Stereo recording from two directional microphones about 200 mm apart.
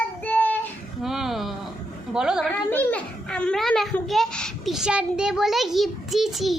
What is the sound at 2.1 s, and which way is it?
Speech, 5° right (ahead or behind).